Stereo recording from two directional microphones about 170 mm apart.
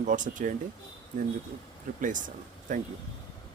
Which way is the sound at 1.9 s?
50° right (ahead or behind).